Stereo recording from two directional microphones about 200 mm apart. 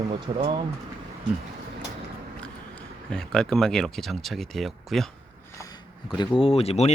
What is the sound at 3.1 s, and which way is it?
Speech, 5° left (ahead or behind).